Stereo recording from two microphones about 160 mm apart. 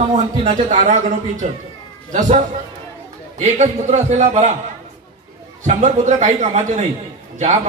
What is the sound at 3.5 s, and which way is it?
Speech, 45° right (ahead or behind).